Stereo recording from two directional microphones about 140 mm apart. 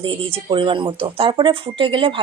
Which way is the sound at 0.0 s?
40° right (ahead or behind).